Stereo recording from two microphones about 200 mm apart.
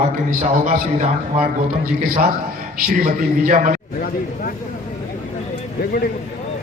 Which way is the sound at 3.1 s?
40° right (ahead or behind).